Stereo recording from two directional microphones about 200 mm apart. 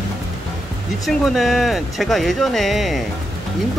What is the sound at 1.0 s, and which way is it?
Speech, centre (ahead or behind).